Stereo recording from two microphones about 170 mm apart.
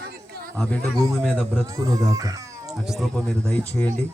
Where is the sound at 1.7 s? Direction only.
20° right (ahead or behind).